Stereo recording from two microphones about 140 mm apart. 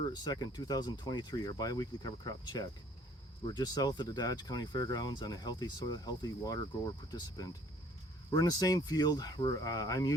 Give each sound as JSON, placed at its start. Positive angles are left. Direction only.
{"t": 0.0, "sound": "speech", "side_deg": 30}